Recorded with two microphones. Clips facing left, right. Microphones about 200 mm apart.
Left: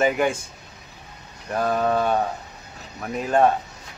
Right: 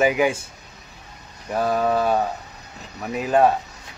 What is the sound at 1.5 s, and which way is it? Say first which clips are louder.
Speech: right 1 dB; 5° right (ahead or behind).